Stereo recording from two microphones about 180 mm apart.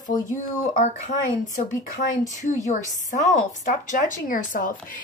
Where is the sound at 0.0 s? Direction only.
45° left (ahead or behind).